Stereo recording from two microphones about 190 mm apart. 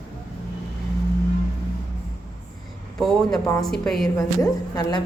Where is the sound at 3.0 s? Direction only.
Centre (ahead or behind).